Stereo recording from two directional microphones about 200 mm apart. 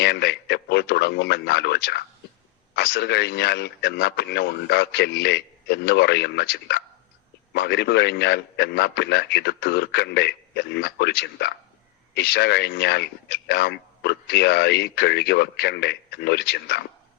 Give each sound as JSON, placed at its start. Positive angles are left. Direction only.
{"t": 0.0, "sound": "a man's voice", "side_deg": 55}